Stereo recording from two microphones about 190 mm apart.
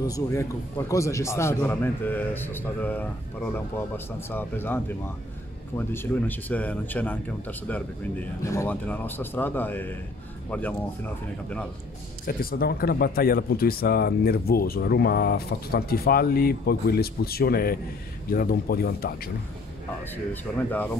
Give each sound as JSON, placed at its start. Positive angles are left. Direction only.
{"t": 0.0, "sound": "speech", "side_deg": 15}
{"t": 12.3, "sound": "speech", "side_deg": 50}